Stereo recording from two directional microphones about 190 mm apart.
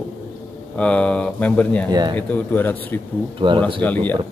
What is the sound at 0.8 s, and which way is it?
Speech, 5° left (ahead or behind).